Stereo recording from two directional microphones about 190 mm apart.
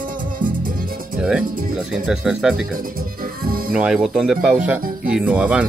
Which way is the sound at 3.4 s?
50° right (ahead or behind).